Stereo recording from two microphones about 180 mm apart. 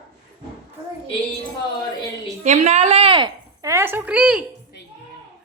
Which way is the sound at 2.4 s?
40° right (ahead or behind).